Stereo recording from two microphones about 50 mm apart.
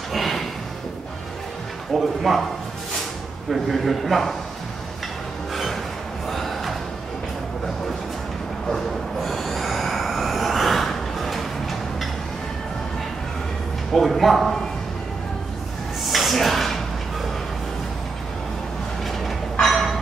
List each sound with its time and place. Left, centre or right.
0.1 s music: centre
2.0 s a man's voice: centre
3.4 s a man's voice: centre
5.5 s music: centre
6.2 s a sound: centre
8.6 s train: centre
13.9 s speech: centre
16.0 s a sound: centre
19.6 s a sound: centre